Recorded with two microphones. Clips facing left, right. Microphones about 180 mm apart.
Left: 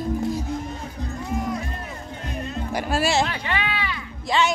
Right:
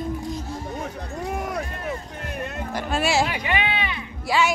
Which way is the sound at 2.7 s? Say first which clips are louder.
Left 1 dB; 5° left (ahead or behind).